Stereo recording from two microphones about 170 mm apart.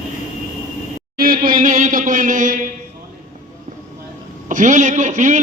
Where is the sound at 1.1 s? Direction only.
60° right (ahead or behind).